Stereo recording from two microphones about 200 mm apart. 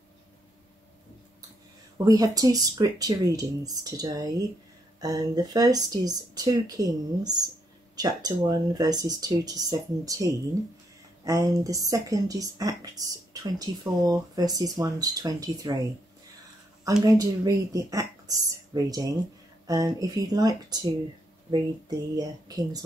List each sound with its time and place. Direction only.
2.0 s speech: 15° right (ahead or behind)
16.8 s speech: 15° right (ahead or behind)